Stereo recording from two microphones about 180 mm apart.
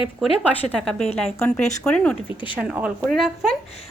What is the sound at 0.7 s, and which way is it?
A woman's voice, centre (ahead or behind).